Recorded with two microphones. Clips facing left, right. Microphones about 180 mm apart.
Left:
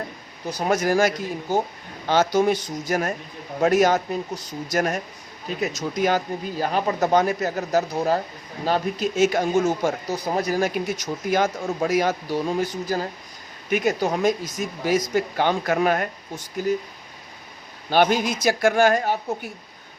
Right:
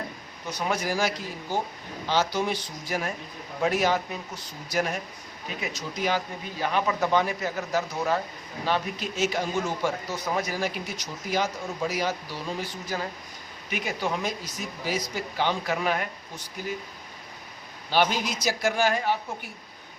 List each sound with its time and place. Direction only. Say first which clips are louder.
0.6 s a man's voice: left 7 dB; 50° left (ahead or behind)
17.9 s a man's voice: left 5 dB; 50° left (ahead or behind)